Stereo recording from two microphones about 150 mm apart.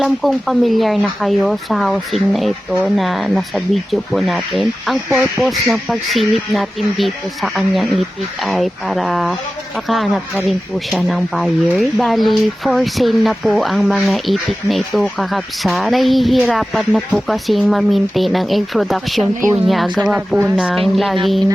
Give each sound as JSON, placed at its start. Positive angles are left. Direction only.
{"t": 0.0, "sound": "speech", "side_deg": 0}
{"t": 10.9, "sound": "speech", "side_deg": 0}